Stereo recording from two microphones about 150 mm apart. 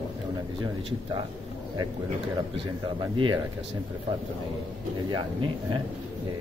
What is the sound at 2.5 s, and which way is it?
Speech, 35° right (ahead or behind).